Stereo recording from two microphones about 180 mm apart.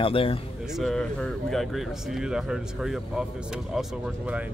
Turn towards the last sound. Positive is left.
turn(degrees=-5)  # may be behind; listen again after turning